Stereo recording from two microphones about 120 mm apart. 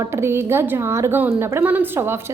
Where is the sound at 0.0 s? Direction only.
20° right (ahead or behind).